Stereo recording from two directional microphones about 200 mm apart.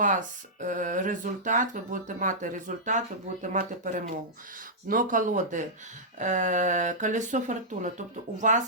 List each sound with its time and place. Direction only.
0.0 s speech: 40° right (ahead or behind)